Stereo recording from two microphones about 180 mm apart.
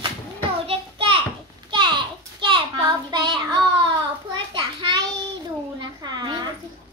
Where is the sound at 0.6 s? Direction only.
30° right (ahead or behind).